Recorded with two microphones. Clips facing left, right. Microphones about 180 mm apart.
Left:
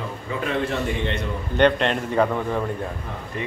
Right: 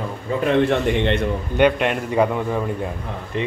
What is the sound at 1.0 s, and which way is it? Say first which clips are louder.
Speech: right 7 dB; 65° right (ahead or behind).